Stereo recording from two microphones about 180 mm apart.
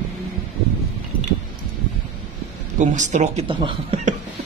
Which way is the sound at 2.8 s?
40° right (ahead or behind).